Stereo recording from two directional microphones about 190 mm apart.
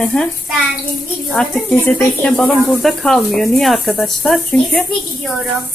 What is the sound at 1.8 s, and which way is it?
Speech, 5° left (ahead or behind).